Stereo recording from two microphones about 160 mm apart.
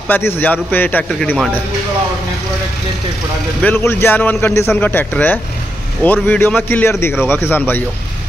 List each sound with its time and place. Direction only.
0.1 s a man's voice: 15° left (ahead or behind)
3.6 s a man's voice: 15° left (ahead or behind)